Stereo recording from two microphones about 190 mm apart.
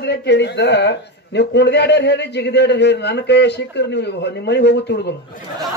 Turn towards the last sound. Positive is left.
turn(degrees=65)  # may be behind; listen again after turning